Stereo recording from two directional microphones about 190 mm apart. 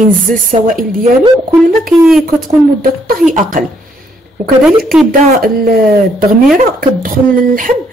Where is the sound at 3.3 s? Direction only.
40° right (ahead or behind).